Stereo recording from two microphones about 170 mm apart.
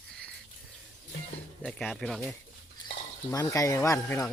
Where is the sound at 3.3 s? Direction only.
20° left (ahead or behind).